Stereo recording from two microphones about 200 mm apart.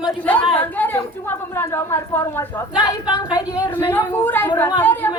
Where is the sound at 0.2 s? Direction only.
10° left (ahead or behind).